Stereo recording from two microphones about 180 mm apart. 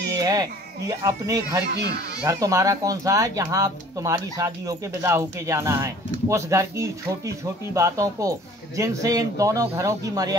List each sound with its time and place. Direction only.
0.2 s baby cry: 20° right (ahead or behind)
0.8 s speech: 20° right (ahead or behind)